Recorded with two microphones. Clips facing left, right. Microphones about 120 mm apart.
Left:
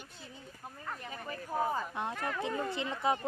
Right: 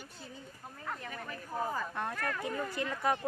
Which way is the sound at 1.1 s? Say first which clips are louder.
Left 3 dB; 25° left (ahead or behind).